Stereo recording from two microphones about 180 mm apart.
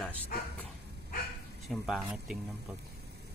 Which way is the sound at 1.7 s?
Centre (ahead or behind).